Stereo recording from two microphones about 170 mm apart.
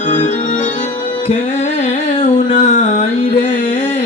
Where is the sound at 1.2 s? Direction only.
40° left (ahead or behind).